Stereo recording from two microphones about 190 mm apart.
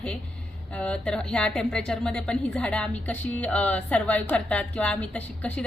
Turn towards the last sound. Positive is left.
turn(degrees=5)  # may be behind; listen again after turning